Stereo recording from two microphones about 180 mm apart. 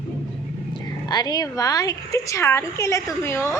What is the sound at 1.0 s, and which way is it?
A woman's voice, 20° left (ahead or behind).